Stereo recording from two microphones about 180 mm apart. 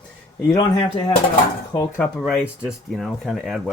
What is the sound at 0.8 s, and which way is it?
Speech, 35° left (ahead or behind).